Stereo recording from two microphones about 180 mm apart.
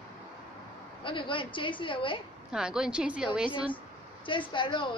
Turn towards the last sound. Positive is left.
turn(degrees=25)  # may be behind; listen again after turning